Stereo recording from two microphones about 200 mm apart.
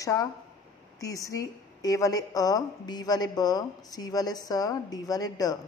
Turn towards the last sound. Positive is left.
turn(degrees=20)  # may be behind; listen again after turning